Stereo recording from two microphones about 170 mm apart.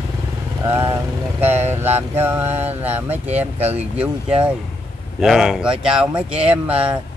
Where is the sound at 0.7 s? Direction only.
15° right (ahead or behind).